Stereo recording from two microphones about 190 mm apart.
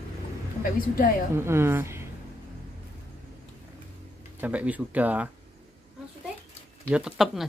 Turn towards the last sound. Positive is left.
turn(degrees=0)  # may be behind; listen again after turning